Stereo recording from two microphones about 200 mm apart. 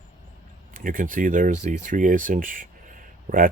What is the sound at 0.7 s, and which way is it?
Speech, 45° right (ahead or behind).